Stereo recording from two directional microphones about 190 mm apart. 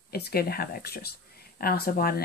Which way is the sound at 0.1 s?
55° left (ahead or behind).